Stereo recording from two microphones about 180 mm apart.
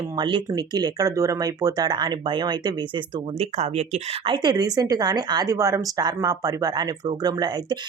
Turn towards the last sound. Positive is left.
turn(degrees=-25)  # may be behind; listen again after turning